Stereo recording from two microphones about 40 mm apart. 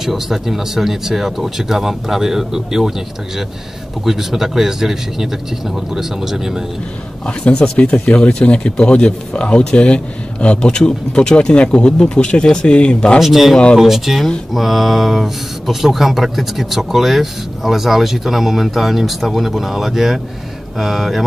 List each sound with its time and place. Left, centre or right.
0.0 s speech: centre
4.0 s speech: centre
7.5 s speech: centre
13.2 s speech: centre